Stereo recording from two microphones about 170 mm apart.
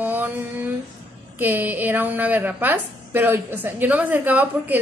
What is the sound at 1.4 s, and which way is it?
A woman's voice, 10° right (ahead or behind).